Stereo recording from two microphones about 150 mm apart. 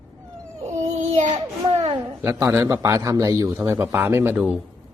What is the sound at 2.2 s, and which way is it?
A man's voice, 20° right (ahead or behind).